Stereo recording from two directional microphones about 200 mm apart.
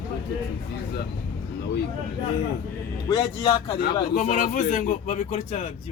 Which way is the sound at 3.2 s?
25° left (ahead or behind).